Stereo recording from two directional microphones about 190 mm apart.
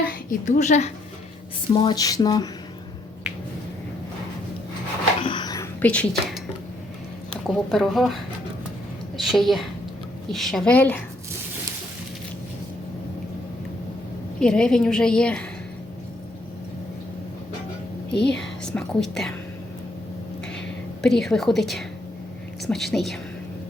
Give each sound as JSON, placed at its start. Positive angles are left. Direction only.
{"t": 0.0, "sound": "a woman's voice", "side_deg": 45}
{"t": 1.7, "sound": "a sound", "side_deg": 25}
{"t": 5.2, "sound": "a sound", "side_deg": 25}
{"t": 5.8, "sound": "speech", "side_deg": 5}
{"t": 7.4, "sound": "a woman's voice", "side_deg": 0}
{"t": 9.1, "sound": "a woman's voice", "side_deg": 0}
{"t": 14.3, "sound": "a woman's voice", "side_deg": 5}
{"t": 18.1, "sound": "a woman's voice", "side_deg": 60}
{"t": 18.3, "sound": "whispering", "side_deg": 5}
{"t": 21.0, "sound": "a woman's voice", "side_deg": 5}